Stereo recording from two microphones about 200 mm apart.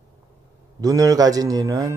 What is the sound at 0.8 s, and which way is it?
Speech, 15° right (ahead or behind).